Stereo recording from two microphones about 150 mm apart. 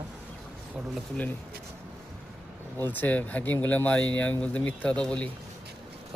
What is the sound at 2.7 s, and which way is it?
Speech, 10° left (ahead or behind).